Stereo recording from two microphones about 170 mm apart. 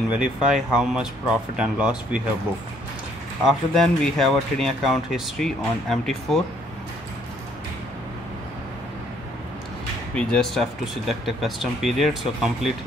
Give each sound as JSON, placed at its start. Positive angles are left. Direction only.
{"t": 0.1, "sound": "speech", "side_deg": -5}
{"t": 3.4, "sound": "speech", "side_deg": 0}
{"t": 10.1, "sound": "speech", "side_deg": 5}